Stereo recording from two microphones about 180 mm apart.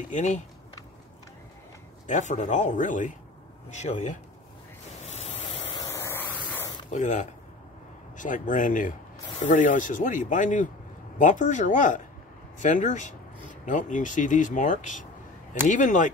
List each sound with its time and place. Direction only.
0.1 s speech: 40° left (ahead or behind)
2.0 s speech: 40° left (ahead or behind)
5.0 s a sound: 40° left (ahead or behind)
5.8 s vehicle: 15° left (ahead or behind)
6.9 s speech: 45° left (ahead or behind)